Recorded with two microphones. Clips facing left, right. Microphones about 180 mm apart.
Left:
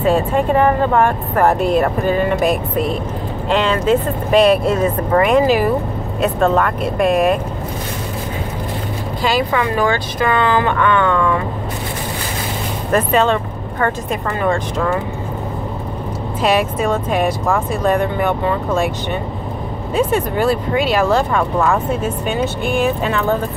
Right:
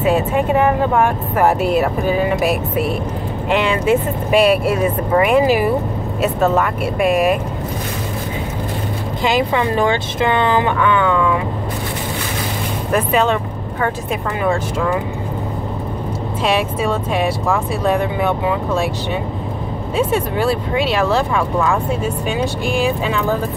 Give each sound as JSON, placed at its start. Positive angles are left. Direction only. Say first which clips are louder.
{"t": 0.0, "sound": "speech", "louder": "left 1 dB", "side_deg": -5}
{"t": 9.2, "sound": "speech", "louder": "right 1 dB", "side_deg": -20}
{"t": 12.9, "sound": "speech", "louder": "left 1 dB", "side_deg": -5}
{"t": 16.4, "sound": "speech", "louder": "left 2 dB", "side_deg": 0}
{"t": 20.0, "sound": "speech", "louder": "left 1 dB", "side_deg": 0}